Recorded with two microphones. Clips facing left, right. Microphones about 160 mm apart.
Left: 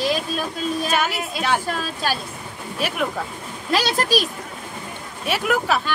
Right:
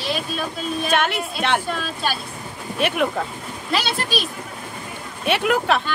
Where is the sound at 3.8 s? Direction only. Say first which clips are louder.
Left 4 dB; 40° left (ahead or behind).